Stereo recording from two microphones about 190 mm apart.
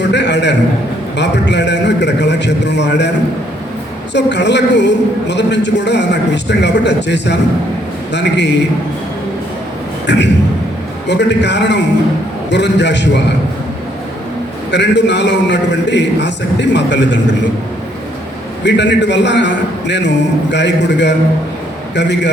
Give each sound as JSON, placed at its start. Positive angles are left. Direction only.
{"t": 0.0, "sound": "a sound", "side_deg": 65}
{"t": 1.1, "sound": "a woman's voice", "side_deg": 65}
{"t": 4.1, "sound": "a woman's voice", "side_deg": 65}
{"t": 10.1, "sound": "a man's voice", "side_deg": 65}
{"t": 14.7, "sound": "a woman's voice", "side_deg": 65}
{"t": 18.6, "sound": "a woman's voice", "side_deg": 65}